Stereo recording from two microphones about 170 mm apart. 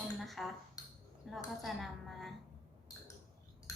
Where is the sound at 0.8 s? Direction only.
20° left (ahead or behind).